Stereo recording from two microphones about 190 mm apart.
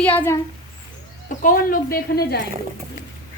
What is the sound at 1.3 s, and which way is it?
A woman's voice, 45° left (ahead or behind).